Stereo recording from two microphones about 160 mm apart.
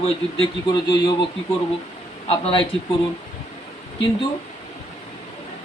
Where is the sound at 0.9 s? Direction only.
25° left (ahead or behind).